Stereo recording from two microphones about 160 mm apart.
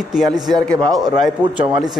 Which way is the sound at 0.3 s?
25° right (ahead or behind).